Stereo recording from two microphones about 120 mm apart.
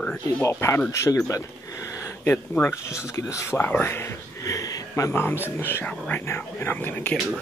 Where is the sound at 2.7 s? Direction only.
25° left (ahead or behind).